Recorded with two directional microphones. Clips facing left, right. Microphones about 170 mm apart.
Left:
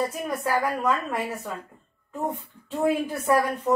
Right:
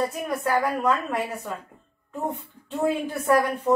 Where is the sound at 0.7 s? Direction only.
Centre (ahead or behind).